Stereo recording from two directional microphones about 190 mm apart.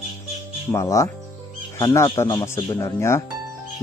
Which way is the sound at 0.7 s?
15° left (ahead or behind).